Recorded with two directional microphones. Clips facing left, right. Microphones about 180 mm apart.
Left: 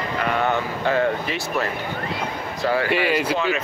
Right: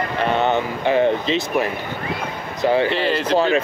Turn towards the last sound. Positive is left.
turn(degrees=10)  # may be behind; listen again after turning